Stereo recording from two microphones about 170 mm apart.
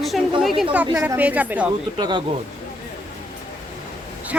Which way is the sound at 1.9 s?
25° right (ahead or behind).